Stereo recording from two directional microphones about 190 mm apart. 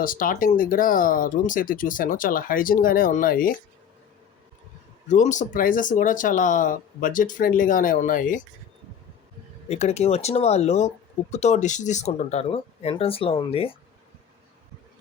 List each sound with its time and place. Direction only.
0.0 s speech: 45° left (ahead or behind)
5.0 s speech: 40° left (ahead or behind)
9.6 s speech: 35° left (ahead or behind)